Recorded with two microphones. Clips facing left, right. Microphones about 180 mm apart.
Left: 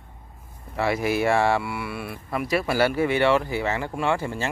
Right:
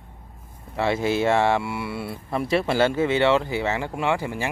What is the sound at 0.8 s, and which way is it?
Speech, 25° right (ahead or behind).